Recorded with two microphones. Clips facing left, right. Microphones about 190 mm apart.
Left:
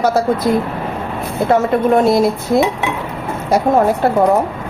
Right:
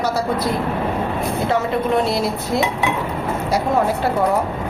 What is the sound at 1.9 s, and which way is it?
Speech, 50° left (ahead or behind).